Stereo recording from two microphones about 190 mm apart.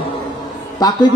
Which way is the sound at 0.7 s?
20° left (ahead or behind).